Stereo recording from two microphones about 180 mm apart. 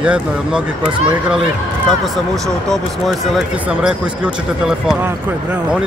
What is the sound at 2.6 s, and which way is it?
Speech, centre (ahead or behind).